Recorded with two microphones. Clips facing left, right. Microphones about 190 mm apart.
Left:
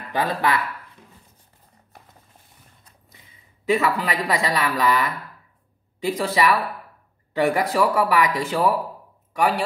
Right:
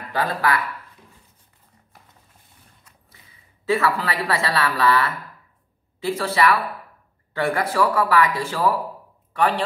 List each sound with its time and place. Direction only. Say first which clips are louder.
0.1 s speech: even; 20° left (ahead or behind)
3.6 s a man's voice: even; 15° left (ahead or behind)